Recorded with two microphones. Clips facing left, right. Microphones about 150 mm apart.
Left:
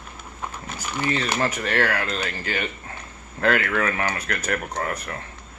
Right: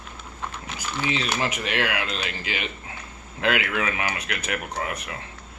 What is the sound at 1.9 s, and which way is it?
Speech, 50° left (ahead or behind).